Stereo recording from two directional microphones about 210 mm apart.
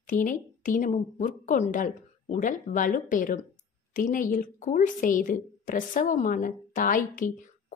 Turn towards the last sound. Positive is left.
turn(degrees=40)  # may be behind; listen again after turning